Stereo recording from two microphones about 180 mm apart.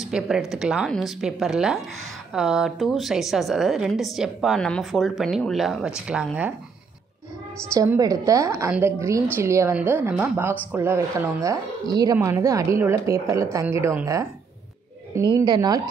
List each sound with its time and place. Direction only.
0.0 s a woman's voice: 5° right (ahead or behind)
7.7 s a woman's voice: 15° right (ahead or behind)